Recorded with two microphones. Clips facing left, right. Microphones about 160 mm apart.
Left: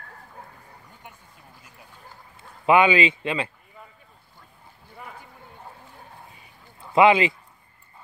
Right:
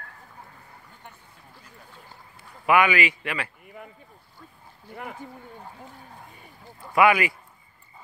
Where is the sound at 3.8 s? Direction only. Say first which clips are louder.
Right 5 dB; 70° right (ahead or behind).